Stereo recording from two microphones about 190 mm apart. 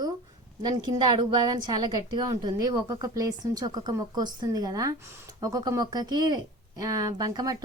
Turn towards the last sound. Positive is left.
turn(degrees=-20)  # may be behind; listen again after turning